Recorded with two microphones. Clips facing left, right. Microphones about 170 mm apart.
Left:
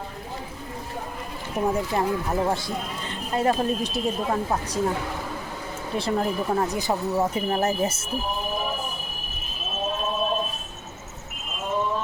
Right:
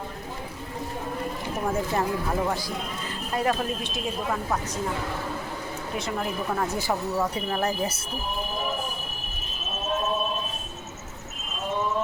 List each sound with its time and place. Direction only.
1.6 s speech: 20° left (ahead or behind)
6.0 s speech: 35° left (ahead or behind)
6.7 s speech: 20° left (ahead or behind)